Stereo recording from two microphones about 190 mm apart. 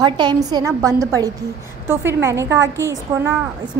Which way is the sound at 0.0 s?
20° right (ahead or behind).